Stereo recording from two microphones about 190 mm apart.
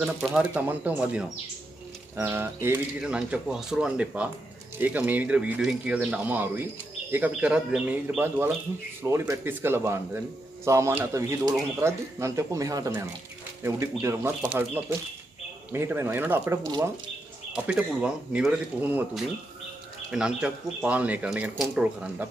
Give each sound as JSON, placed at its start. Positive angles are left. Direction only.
{"t": 0.0, "sound": "speech", "side_deg": -5}
{"t": 17.5, "sound": "speech", "side_deg": -5}